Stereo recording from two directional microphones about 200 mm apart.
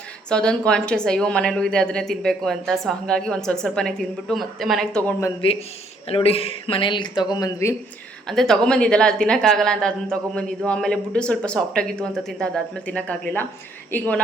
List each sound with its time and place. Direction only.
0.3 s a woman's voice: 5° left (ahead or behind)
5.4 s speech: 30° left (ahead or behind)
8.3 s a woman's voice: centre (ahead or behind)